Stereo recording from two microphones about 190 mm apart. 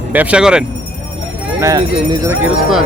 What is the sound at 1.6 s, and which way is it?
Speech, 20° right (ahead or behind).